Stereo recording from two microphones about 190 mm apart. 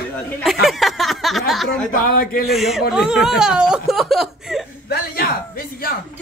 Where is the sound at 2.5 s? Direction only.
Centre (ahead or behind).